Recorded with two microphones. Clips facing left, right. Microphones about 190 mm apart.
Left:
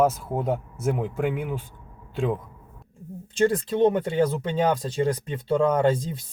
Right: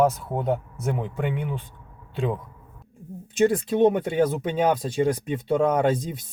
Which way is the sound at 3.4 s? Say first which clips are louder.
Right 1 dB; 10° right (ahead or behind).